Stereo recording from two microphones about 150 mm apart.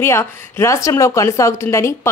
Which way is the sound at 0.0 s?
15° left (ahead or behind).